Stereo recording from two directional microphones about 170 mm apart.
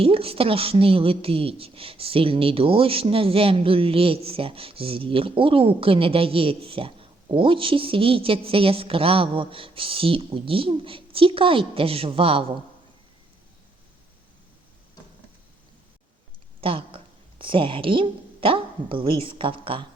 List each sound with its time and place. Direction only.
0.0 s a woman's voice: 35° right (ahead or behind)
16.6 s speech: 30° right (ahead or behind)